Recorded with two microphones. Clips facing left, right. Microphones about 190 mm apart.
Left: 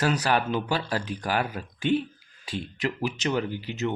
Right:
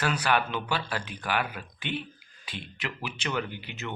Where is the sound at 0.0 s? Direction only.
40° left (ahead or behind).